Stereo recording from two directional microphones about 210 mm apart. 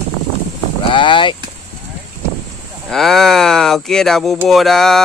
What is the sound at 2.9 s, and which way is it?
Speech, centre (ahead or behind).